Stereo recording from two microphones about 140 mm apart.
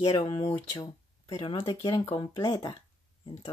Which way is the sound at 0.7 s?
30° left (ahead or behind).